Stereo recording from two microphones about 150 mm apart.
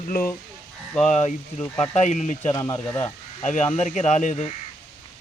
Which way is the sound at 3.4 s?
50° left (ahead or behind).